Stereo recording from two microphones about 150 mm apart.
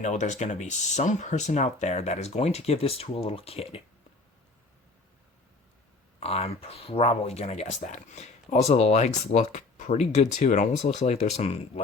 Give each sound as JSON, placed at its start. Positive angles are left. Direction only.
{"t": 0.0, "sound": "speech", "side_deg": 50}
{"t": 6.1, "sound": "speech", "side_deg": 40}